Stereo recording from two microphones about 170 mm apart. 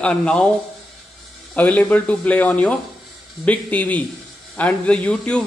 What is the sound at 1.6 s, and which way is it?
Speech, 10° left (ahead or behind).